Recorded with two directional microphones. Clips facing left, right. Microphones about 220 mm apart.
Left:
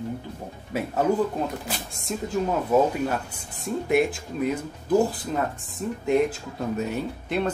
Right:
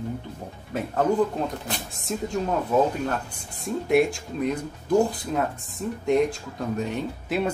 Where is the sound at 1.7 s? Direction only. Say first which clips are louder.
Right 1 dB; centre (ahead or behind).